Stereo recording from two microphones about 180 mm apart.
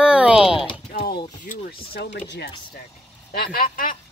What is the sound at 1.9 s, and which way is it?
Speech, 65° left (ahead or behind).